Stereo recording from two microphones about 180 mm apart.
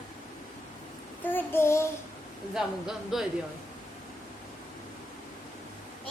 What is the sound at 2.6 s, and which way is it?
Speech, centre (ahead or behind).